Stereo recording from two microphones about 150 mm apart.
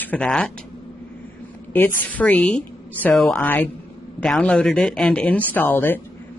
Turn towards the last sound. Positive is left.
turn(degrees=15)  # may be behind; listen again after turning